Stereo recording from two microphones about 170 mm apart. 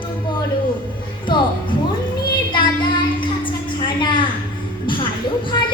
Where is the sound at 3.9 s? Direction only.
30° left (ahead or behind).